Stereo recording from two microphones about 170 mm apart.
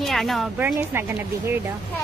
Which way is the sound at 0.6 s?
10° right (ahead or behind).